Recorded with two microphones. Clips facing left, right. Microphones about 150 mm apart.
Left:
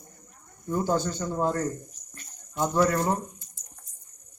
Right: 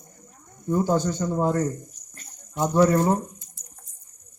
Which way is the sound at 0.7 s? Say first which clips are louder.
Right 4 dB; 10° right (ahead or behind).